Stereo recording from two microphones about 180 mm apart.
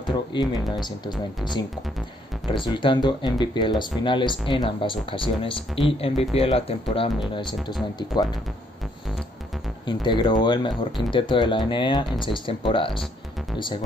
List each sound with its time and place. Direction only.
0.0 s a sound: 25° left (ahead or behind)
0.7 s speech: 25° left (ahead or behind)
9.8 s speech: 25° left (ahead or behind)